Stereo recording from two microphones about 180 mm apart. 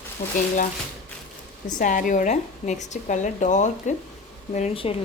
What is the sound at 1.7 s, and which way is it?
A woman's voice, 45° left (ahead or behind).